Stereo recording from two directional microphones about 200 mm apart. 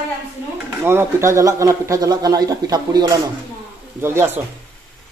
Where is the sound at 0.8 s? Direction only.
15° right (ahead or behind).